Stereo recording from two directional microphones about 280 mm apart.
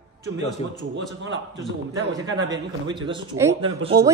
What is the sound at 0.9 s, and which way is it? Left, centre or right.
Speech, right.